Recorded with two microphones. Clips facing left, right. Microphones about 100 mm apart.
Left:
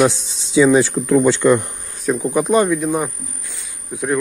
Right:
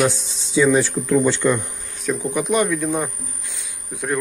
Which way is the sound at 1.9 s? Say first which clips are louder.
Left 4 dB; 35° left (ahead or behind).